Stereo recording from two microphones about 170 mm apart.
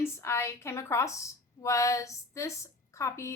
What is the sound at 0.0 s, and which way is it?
A woman's voice, 15° left (ahead or behind).